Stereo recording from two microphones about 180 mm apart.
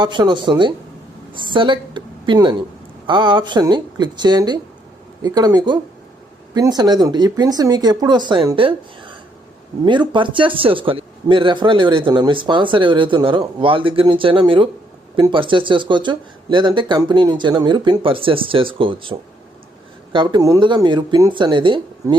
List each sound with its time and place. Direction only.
0.0 s speech: 25° right (ahead or behind)
20.1 s speech: 25° right (ahead or behind)